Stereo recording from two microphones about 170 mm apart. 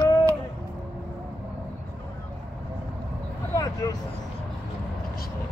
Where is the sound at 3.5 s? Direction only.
20° left (ahead or behind).